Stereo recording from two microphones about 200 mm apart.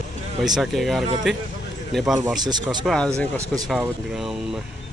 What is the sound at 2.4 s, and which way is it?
Speech, 20° right (ahead or behind).